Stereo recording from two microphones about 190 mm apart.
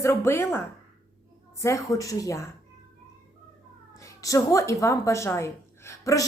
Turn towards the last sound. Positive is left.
turn(degrees=15)  # may be behind; listen again after turning